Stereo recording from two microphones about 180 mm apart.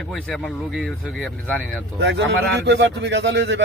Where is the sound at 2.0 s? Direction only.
70° right (ahead or behind).